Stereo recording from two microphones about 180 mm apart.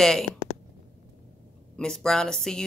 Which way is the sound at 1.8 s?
5° left (ahead or behind).